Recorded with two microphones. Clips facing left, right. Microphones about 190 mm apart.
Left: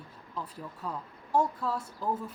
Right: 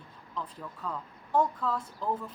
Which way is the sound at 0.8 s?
10° left (ahead or behind).